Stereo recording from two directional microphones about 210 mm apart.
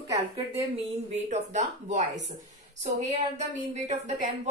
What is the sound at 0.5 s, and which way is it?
A woman's voice, 30° right (ahead or behind).